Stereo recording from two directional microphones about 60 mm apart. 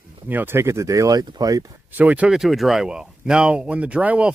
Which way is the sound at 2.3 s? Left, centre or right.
Centre.